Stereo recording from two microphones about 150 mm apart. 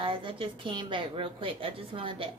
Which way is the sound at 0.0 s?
35° right (ahead or behind).